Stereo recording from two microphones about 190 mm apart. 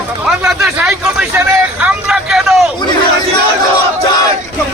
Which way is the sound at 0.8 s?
5° right (ahead or behind).